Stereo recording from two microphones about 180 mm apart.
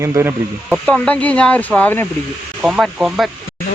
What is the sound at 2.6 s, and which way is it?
Speech, 5° right (ahead or behind).